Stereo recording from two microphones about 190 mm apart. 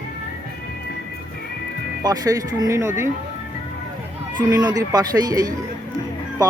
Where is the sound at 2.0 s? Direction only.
20° right (ahead or behind).